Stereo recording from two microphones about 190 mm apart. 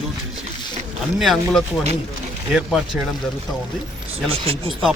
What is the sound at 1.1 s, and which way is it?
A man's voice, centre (ahead or behind).